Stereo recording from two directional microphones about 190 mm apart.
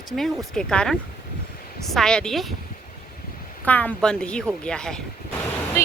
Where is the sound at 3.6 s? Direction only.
10° left (ahead or behind).